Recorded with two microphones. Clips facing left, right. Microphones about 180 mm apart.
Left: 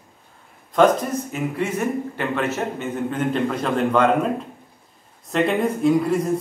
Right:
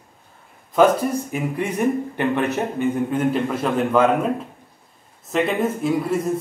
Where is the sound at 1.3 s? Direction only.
15° right (ahead or behind).